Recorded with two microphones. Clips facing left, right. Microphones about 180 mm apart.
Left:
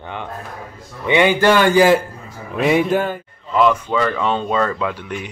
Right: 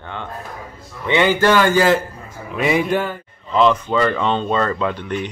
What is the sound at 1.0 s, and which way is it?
Speech, 15° left (ahead or behind).